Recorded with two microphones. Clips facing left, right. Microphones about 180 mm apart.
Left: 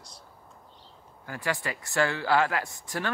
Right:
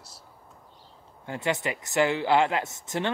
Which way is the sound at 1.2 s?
25° right (ahead or behind).